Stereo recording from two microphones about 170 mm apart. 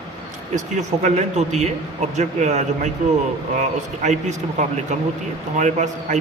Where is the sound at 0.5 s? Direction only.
45° right (ahead or behind).